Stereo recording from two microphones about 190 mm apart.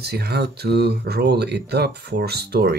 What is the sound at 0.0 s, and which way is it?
Speech, 55° right (ahead or behind).